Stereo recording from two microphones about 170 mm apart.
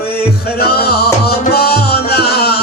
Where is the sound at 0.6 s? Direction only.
65° left (ahead or behind).